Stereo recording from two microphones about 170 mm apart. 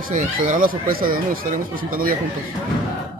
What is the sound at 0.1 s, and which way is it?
Speech, 50° right (ahead or behind).